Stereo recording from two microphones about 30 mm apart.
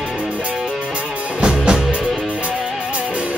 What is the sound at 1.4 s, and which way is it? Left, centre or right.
Music, right.